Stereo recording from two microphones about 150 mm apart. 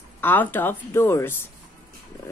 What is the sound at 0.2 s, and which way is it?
Speech, 15° left (ahead or behind).